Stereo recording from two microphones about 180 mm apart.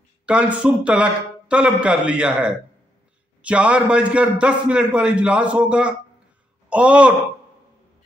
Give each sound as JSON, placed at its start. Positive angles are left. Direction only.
{"t": 0.3, "sound": "a man's voice", "side_deg": -5}